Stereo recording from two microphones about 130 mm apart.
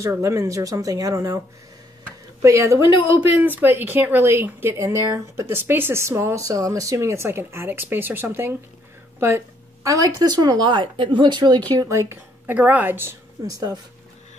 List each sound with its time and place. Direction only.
0.1 s speech: 20° right (ahead or behind)
2.4 s speech: 25° right (ahead or behind)
9.8 s a woman's voice: 30° right (ahead or behind)
13.5 s speech: 25° right (ahead or behind)